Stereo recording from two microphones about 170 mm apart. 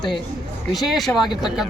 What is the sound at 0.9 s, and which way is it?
Speech, centre (ahead or behind).